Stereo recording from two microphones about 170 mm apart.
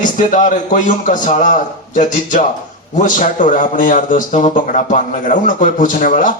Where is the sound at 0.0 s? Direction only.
50° left (ahead or behind).